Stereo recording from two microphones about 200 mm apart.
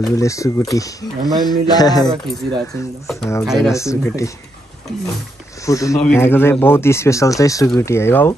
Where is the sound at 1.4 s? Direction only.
20° left (ahead or behind).